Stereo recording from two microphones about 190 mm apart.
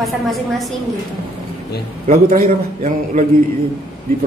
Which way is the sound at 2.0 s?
45° right (ahead or behind).